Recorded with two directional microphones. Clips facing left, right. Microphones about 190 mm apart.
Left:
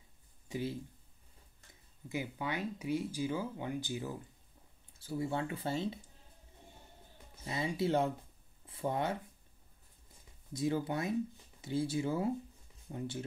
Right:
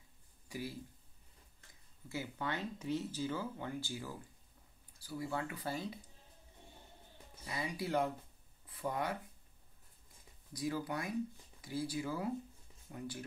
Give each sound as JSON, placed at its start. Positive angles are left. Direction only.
{"t": 0.5, "sound": "speech", "side_deg": 25}
{"t": 2.0, "sound": "speech", "side_deg": 15}
{"t": 7.4, "sound": "speech", "side_deg": 25}
{"t": 10.5, "sound": "speech", "side_deg": 25}